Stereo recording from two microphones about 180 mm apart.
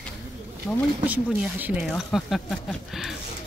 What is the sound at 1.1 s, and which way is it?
Speech, 5° right (ahead or behind).